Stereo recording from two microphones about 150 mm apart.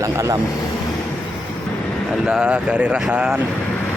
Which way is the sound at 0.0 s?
20° right (ahead or behind).